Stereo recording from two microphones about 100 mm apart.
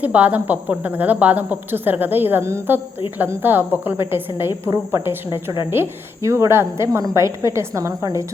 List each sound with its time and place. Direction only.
0.0 s a woman's voice: 15° right (ahead or behind)
5.7 s a woman's voice: 25° right (ahead or behind)